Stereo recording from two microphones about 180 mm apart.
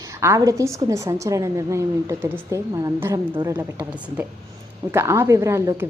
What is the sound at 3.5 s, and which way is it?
A woman's voice, 10° right (ahead or behind).